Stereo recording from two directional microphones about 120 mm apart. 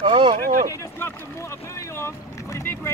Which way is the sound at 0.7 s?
20° left (ahead or behind).